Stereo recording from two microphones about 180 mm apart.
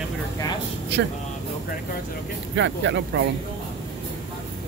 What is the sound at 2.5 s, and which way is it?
Speech, 90° right.